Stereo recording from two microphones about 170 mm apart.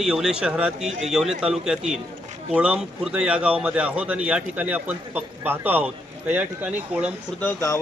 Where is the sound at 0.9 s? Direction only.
40° right (ahead or behind).